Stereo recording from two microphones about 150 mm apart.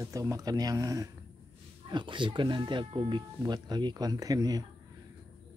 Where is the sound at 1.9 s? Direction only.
30° right (ahead or behind).